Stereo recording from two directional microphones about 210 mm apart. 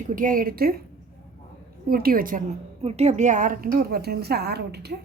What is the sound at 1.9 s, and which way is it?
Speech, 45° right (ahead or behind).